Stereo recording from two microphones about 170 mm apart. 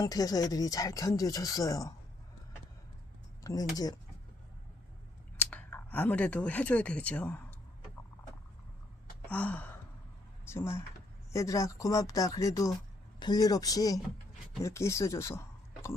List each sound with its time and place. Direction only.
0.0 s speech: 20° left (ahead or behind)
3.4 s speech: 20° left (ahead or behind)
5.4 s speech: 10° left (ahead or behind)
9.3 s gasp: 10° left (ahead or behind)
10.4 s speech: 15° left (ahead or behind)